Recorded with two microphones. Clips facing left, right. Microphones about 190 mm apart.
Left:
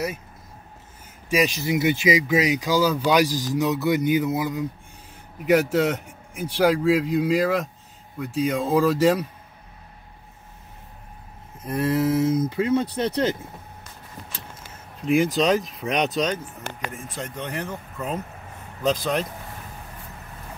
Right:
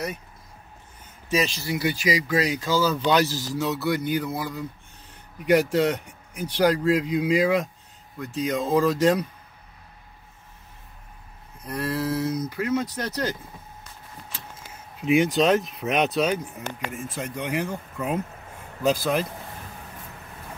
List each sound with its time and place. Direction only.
1.3 s speech: 15° left (ahead or behind)
5.4 s a man's voice: 5° left (ahead or behind)
11.6 s speech: 20° left (ahead or behind)
15.0 s a man's voice: centre (ahead or behind)